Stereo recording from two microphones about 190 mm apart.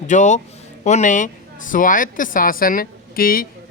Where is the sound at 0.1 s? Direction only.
40° left (ahead or behind).